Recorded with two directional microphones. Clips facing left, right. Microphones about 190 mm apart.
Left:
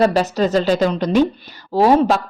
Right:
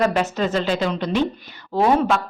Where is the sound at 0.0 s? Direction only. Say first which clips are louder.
Left 4 dB; 35° left (ahead or behind).